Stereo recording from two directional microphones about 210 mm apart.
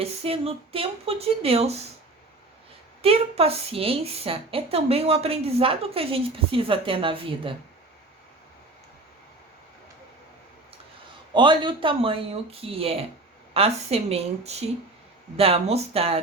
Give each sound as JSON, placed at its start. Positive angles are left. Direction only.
{"t": 0.0, "sound": "a woman's voice", "side_deg": -30}
{"t": 3.0, "sound": "a woman's voice", "side_deg": -30}
{"t": 11.3, "sound": "a woman's voice", "side_deg": -20}